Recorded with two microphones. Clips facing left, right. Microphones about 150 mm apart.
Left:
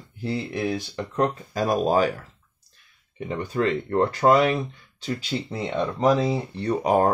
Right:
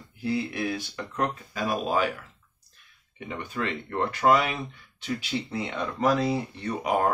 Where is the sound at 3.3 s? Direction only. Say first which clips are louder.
Left 7 dB; 35° left (ahead or behind).